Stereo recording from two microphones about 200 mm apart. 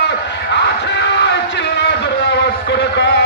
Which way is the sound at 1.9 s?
60° left (ahead or behind).